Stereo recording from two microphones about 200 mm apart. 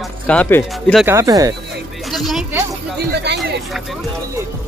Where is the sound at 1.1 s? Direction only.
15° right (ahead or behind).